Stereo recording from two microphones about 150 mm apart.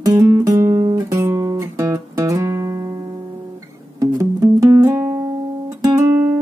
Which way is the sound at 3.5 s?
25° right (ahead or behind).